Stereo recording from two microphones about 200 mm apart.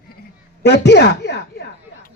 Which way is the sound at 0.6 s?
60° left (ahead or behind).